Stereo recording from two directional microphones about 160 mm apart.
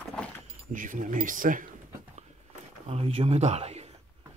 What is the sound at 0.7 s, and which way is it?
Speech, 55° right (ahead or behind).